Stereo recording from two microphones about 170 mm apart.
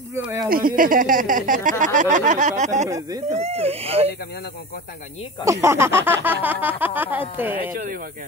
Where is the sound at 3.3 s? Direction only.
35° right (ahead or behind).